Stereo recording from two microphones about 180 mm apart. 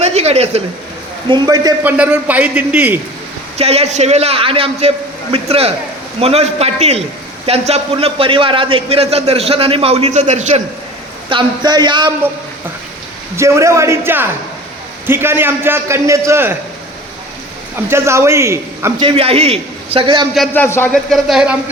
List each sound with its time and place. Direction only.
0.0 s a sound: 35° right (ahead or behind)
1.3 s a man's voice: 20° right (ahead or behind)
1.8 s a man's voice: 10° right (ahead or behind)
3.6 s a man's voice: 35° right (ahead or behind)
11.3 s a man's voice: 25° right (ahead or behind)
13.3 s a man's voice: 15° right (ahead or behind)
17.8 s a man's voice: 15° right (ahead or behind)
18.9 s a man's voice: 30° right (ahead or behind)
20.5 s a man's voice: 10° left (ahead or behind)
20.9 s speech: centre (ahead or behind)